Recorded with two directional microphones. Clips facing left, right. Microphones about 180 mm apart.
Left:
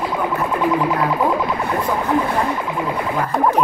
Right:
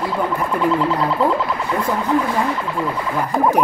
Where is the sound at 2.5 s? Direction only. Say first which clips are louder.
Even; 15° left (ahead or behind).